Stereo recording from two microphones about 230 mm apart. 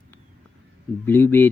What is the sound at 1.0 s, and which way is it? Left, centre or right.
Speech, centre.